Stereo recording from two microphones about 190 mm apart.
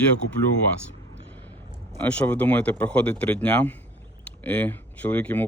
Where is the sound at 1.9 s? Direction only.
5° left (ahead or behind).